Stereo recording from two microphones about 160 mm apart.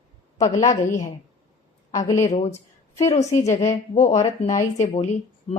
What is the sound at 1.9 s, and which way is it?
Speech, 20° left (ahead or behind).